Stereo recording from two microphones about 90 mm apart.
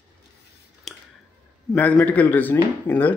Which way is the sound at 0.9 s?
Centre (ahead or behind).